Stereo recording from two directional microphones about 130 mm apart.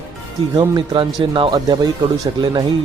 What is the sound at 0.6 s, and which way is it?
Speech, 40° right (ahead or behind).